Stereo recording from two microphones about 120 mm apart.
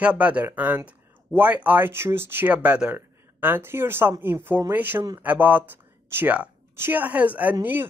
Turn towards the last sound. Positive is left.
turn(degrees=-10)  # may be behind; listen again after turning